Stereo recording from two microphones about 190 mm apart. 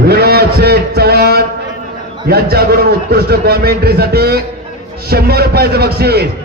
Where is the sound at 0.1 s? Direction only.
55° right (ahead or behind).